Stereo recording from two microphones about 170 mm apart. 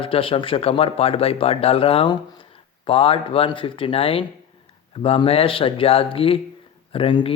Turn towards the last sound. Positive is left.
turn(degrees=30)  # may be behind; listen again after turning